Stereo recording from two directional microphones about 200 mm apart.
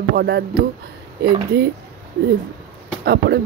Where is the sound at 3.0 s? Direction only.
50° right (ahead or behind).